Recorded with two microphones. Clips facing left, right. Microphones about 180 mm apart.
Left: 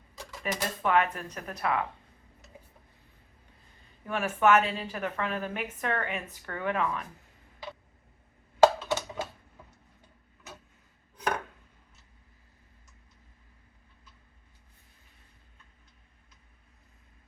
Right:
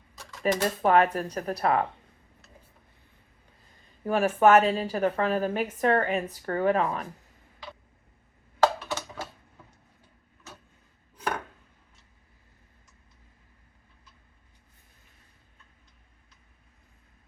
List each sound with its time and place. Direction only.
0.4 s a woman's voice: 35° right (ahead or behind)
4.0 s a woman's voice: 35° right (ahead or behind)
8.8 s typing: 20° left (ahead or behind)